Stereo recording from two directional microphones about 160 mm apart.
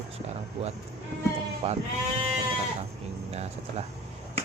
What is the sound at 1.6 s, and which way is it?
Speech, 40° right (ahead or behind).